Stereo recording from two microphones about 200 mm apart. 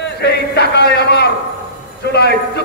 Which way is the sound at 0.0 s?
55° left (ahead or behind).